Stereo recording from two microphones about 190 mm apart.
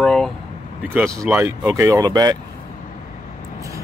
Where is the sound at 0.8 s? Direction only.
10° right (ahead or behind).